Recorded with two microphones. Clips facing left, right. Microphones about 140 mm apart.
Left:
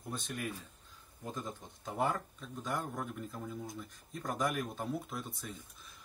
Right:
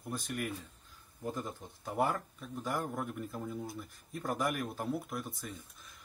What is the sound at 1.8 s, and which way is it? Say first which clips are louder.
Speech: right 2 dB; centre (ahead or behind).